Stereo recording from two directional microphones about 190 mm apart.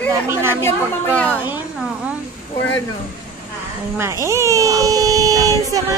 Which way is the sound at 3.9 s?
15° right (ahead or behind).